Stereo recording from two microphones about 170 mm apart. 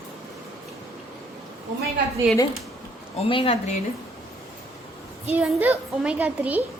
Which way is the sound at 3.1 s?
35° left (ahead or behind).